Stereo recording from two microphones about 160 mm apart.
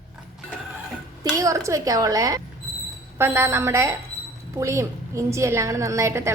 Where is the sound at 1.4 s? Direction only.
20° right (ahead or behind).